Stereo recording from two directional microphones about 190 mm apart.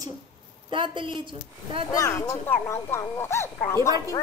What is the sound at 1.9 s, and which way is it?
Speech, 20° left (ahead or behind).